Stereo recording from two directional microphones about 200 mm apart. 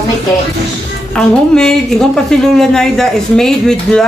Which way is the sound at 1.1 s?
5° left (ahead or behind).